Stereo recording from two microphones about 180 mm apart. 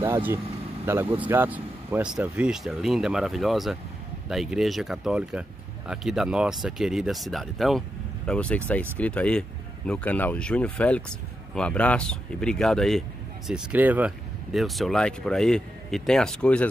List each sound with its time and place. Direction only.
0.0 s speech: 15° right (ahead or behind); by 13.0 s centre (ahead or behind)
13.5 s speech: 10° right (ahead or behind)